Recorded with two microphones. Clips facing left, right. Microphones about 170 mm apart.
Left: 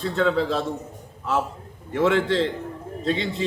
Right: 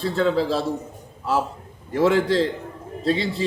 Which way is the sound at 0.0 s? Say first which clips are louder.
Right 1 dB; 35° right (ahead or behind).